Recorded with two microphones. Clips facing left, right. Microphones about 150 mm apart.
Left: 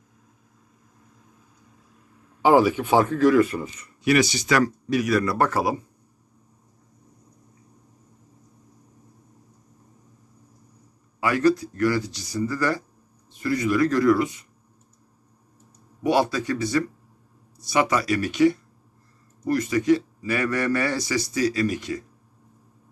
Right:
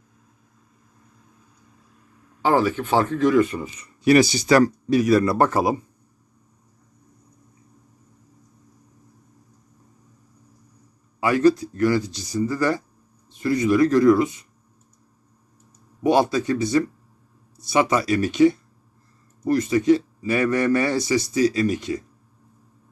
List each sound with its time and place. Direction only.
2.4 s speech: 15° left (ahead or behind)
4.0 s speech: 35° right (ahead or behind)
11.1 s a man's voice: 25° right (ahead or behind)
16.0 s a man's voice: 25° right (ahead or behind)